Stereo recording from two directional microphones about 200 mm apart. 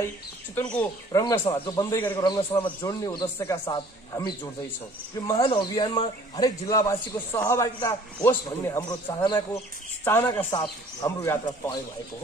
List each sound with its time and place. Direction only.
0.6 s a man's voice: 10° left (ahead or behind)